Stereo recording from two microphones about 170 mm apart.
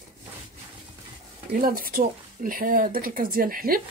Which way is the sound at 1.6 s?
60° right (ahead or behind).